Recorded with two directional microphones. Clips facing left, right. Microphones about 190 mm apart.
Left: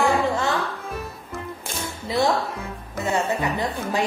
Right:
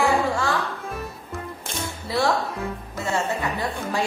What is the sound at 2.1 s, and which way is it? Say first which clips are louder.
A woman's voice: left 1 dB; 20° left (ahead or behind).